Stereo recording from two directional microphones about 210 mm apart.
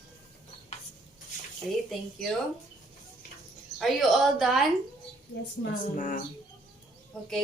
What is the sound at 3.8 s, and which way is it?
Speech, centre (ahead or behind).